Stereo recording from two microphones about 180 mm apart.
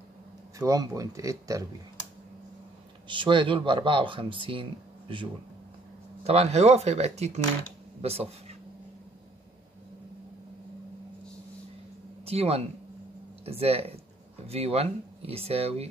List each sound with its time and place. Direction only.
0.6 s speech: 20° right (ahead or behind)
3.1 s speech: 25° right (ahead or behind)
12.3 s speech: 35° right (ahead or behind)